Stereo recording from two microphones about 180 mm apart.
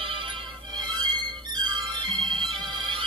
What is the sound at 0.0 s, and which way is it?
Music, 30° right (ahead or behind).